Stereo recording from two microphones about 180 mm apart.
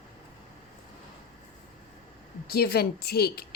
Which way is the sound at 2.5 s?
60° left (ahead or behind).